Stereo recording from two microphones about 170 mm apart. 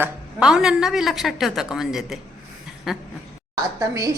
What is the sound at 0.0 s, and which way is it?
A woman's voice, 5° right (ahead or behind).